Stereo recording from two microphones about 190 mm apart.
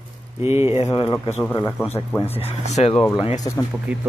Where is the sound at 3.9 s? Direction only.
5° right (ahead or behind).